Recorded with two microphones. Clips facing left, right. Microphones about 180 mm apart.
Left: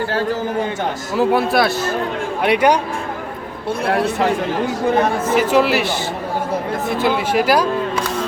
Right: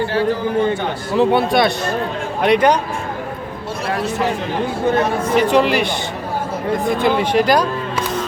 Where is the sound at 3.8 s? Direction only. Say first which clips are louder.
Left 4 dB; 60° left (ahead or behind).